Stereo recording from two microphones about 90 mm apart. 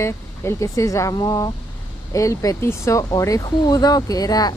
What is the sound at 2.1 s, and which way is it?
Speech, 35° left (ahead or behind).